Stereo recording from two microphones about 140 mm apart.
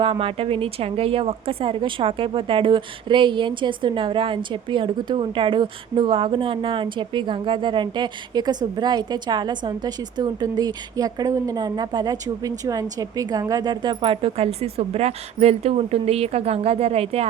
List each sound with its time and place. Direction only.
0.0 s a woman's voice: 40° right (ahead or behind)